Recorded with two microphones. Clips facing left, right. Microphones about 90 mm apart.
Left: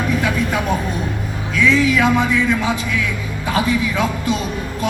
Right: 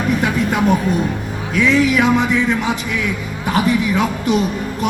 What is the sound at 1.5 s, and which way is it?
Speech, 20° right (ahead or behind).